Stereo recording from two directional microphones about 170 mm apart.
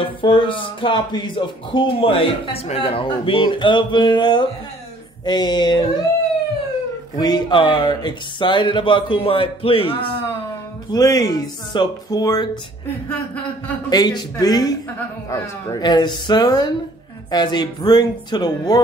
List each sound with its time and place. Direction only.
0.0 s speech: 30° left (ahead or behind)
7.2 s speech: 25° left (ahead or behind)
13.8 s speech: 25° left (ahead or behind)